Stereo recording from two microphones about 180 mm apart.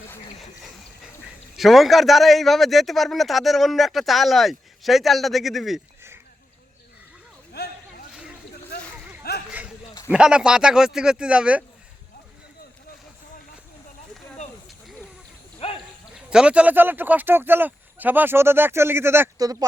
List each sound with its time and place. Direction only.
1.5 s a man's voice: centre (ahead or behind)
8.1 s a sound: 5° right (ahead or behind)
9.5 s a sound: 5° right (ahead or behind)
10.1 s a man's voice: 5° right (ahead or behind)
15.6 s clip-clop: 35° left (ahead or behind)
16.1 s speech: 5° right (ahead or behind); by 19.6 s 20° right (ahead or behind)